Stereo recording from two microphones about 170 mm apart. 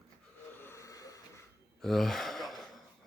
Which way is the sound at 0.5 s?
15° left (ahead or behind).